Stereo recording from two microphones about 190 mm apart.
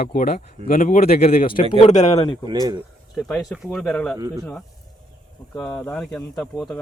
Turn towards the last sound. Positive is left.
turn(degrees=0)  # may be behind; listen again after turning